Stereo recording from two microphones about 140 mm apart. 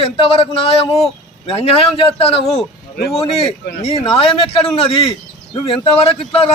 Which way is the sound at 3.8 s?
45° left (ahead or behind).